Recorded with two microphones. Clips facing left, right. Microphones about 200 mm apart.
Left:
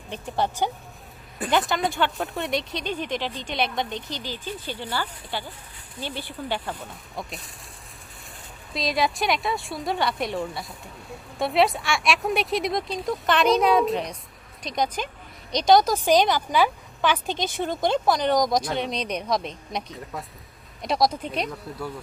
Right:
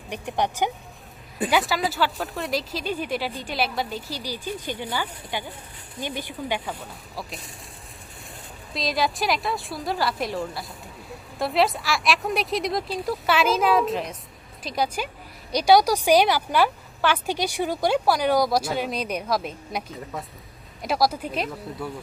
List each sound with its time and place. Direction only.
0.1 s a woman's voice: 15° right (ahead or behind)
1.4 s a woman's voice: centre (ahead or behind)
6.6 s a woman's voice: centre (ahead or behind)
8.7 s a woman's voice: centre (ahead or behind)